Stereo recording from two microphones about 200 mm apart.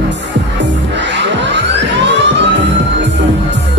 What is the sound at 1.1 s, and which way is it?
Music, 60° right (ahead or behind).